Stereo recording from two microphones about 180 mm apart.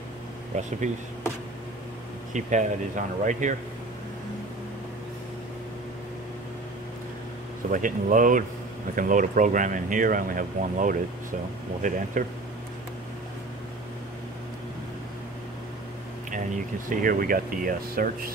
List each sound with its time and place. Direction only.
0.6 s speech: 40° right (ahead or behind)
2.3 s speech: 40° right (ahead or behind)
7.7 s speech: 45° right (ahead or behind)
16.3 s speech: 45° right (ahead or behind)